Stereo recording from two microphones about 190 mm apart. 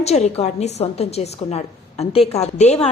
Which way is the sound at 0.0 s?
35° left (ahead or behind).